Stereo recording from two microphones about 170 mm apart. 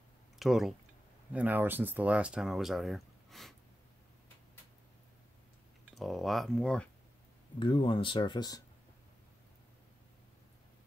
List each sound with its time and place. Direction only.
0.4 s speech: centre (ahead or behind)
5.9 s speech: centre (ahead or behind)
7.5 s speech: 30° left (ahead or behind)